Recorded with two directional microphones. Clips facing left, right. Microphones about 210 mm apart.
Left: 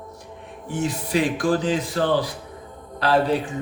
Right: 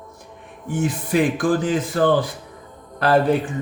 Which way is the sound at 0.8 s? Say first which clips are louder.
Right 3 dB; 55° right (ahead or behind).